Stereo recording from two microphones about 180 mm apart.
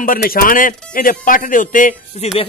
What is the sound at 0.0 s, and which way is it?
Speech, 55° left (ahead or behind).